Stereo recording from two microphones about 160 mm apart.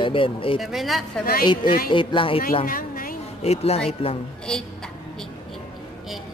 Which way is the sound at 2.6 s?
60° left (ahead or behind).